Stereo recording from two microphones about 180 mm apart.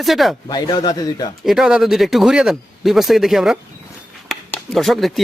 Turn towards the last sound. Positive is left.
turn(degrees=0)  # may be behind; listen again after turning